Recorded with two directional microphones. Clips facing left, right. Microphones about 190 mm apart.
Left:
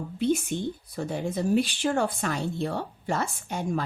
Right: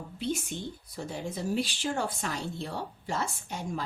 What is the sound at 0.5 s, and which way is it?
Speech, 55° left (ahead or behind).